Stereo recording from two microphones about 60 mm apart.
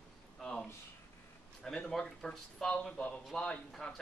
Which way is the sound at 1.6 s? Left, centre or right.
Centre.